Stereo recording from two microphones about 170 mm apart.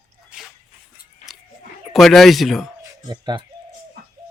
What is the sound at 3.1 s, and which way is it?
Speech, 25° right (ahead or behind).